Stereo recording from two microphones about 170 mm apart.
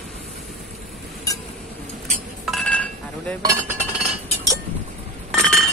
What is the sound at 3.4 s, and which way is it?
Speech, 15° right (ahead or behind).